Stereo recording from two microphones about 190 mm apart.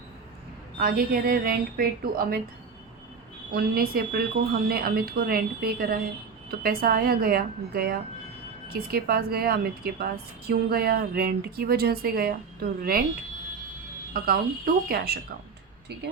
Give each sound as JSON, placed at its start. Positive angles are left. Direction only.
{"t": 0.8, "sound": "a woman's voice", "side_deg": -50}
{"t": 3.5, "sound": "a woman's voice", "side_deg": -55}
{"t": 14.1, "sound": "a woman's voice", "side_deg": -50}